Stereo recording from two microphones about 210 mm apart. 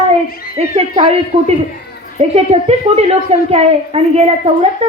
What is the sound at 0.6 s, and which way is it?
Speech, 30° right (ahead or behind).